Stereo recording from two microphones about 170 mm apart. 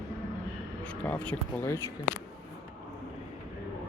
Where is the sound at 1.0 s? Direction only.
10° left (ahead or behind).